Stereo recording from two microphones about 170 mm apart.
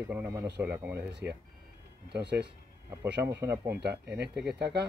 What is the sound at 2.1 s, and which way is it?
Speech, 75° right (ahead or behind).